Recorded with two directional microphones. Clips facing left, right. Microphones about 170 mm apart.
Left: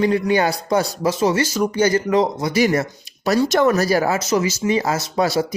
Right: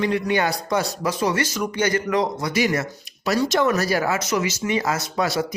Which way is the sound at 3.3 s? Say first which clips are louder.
Left 4 dB; 50° left (ahead or behind).